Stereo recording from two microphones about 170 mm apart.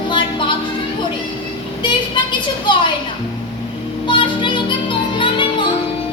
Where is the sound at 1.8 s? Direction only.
30° left (ahead or behind).